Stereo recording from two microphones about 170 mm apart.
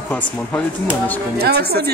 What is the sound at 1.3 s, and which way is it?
Speech, 70° right (ahead or behind).